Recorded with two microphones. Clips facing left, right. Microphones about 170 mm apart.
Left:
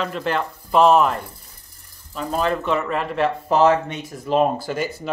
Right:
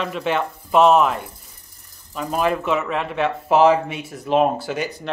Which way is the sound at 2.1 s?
15° right (ahead or behind).